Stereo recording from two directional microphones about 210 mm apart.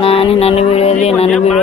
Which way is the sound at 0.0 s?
25° left (ahead or behind).